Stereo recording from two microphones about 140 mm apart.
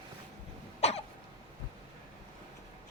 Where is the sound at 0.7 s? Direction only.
50° left (ahead or behind).